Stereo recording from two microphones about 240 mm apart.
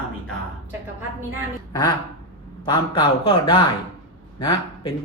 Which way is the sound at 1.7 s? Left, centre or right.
Centre.